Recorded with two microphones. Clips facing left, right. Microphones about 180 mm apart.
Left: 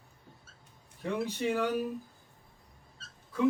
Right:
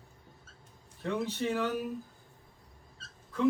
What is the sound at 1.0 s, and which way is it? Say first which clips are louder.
Speech: even; 10° left (ahead or behind).